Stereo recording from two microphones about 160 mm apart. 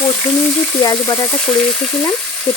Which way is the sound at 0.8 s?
20° left (ahead or behind).